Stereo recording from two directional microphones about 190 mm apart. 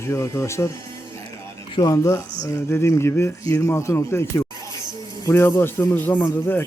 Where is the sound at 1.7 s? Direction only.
20° left (ahead or behind).